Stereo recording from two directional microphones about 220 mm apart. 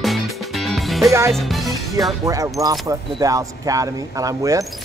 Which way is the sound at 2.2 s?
15° right (ahead or behind).